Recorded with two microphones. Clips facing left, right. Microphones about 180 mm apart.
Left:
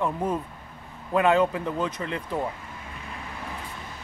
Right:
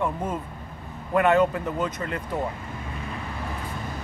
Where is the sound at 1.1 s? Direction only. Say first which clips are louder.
Right 1 dB; 10° left (ahead or behind).